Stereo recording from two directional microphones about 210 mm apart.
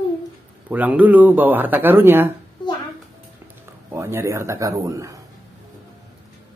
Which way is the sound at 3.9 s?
15° right (ahead or behind).